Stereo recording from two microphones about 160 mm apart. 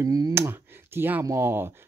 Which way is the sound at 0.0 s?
20° right (ahead or behind).